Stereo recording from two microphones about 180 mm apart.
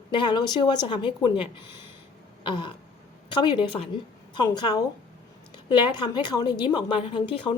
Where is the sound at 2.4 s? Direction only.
25° left (ahead or behind).